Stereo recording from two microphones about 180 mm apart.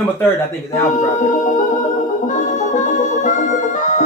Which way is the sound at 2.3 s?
45° left (ahead or behind).